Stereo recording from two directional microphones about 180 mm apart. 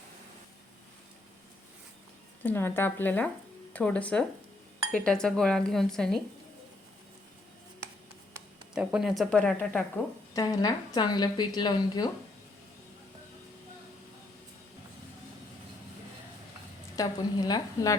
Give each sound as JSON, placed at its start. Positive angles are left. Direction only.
{"t": 2.4, "sound": "speech", "side_deg": 10}
{"t": 4.9, "sound": "dishes", "side_deg": 5}
{"t": 8.7, "sound": "dishes", "side_deg": -5}
{"t": 10.3, "sound": "a woman's voice", "side_deg": 20}
{"t": 16.9, "sound": "a woman's voice", "side_deg": 20}